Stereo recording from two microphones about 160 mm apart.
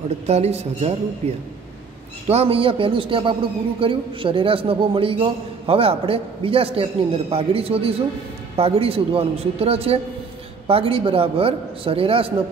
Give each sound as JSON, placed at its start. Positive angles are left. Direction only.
{"t": 0.3, "sound": "a woman's voice", "side_deg": -40}
{"t": 2.2, "sound": "a man's voice", "side_deg": -40}